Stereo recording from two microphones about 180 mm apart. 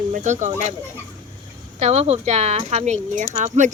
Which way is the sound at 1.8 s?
35° right (ahead or behind).